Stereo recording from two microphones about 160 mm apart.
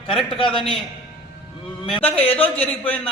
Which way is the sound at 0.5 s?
35° left (ahead or behind).